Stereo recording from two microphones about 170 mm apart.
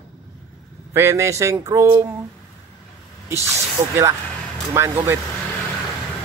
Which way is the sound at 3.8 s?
20° right (ahead or behind).